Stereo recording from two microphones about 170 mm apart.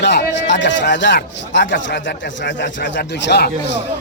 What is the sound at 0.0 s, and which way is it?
Speech, 90° left.